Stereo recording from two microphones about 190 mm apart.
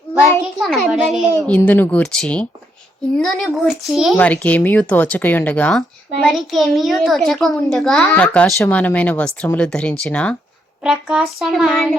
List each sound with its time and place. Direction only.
0.6 s a child's voice: centre (ahead or behind)
1.5 s a child's voice: 10° left (ahead or behind)